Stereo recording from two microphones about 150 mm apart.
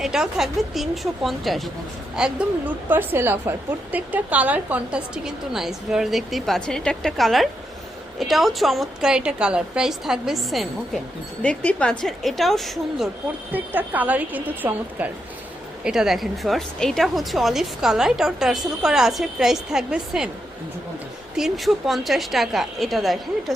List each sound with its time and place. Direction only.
0.0 s a woman's voice: 5° right (ahead or behind)
13.5 s a woman's voice: 10° right (ahead or behind)
21.3 s speech: centre (ahead or behind)